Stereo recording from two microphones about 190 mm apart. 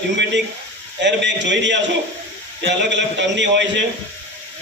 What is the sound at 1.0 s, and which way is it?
A man's voice, 70° right (ahead or behind).